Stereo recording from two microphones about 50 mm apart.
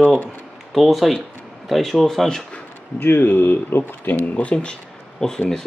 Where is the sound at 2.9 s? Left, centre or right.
Left.